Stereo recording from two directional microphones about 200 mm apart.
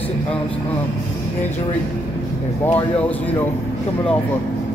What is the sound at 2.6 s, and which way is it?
Speech, 10° left (ahead or behind).